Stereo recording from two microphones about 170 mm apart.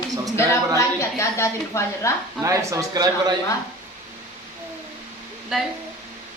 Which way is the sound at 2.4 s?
15° right (ahead or behind).